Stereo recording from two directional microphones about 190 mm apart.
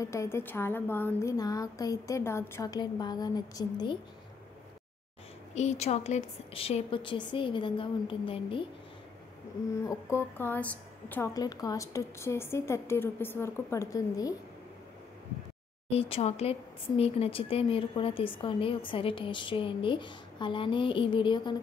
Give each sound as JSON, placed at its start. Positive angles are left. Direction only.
{"t": 0.0, "sound": "a woman's voice", "side_deg": 15}
{"t": 5.5, "sound": "speech", "side_deg": 35}
{"t": 9.8, "sound": "a woman's voice", "side_deg": 15}
{"t": 15.9, "sound": "speech", "side_deg": 30}